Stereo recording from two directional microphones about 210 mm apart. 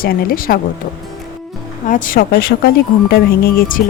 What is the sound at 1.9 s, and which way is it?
Speech, 40° left (ahead or behind).